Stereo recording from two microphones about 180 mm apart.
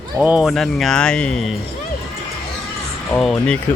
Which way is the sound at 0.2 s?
5° right (ahead or behind).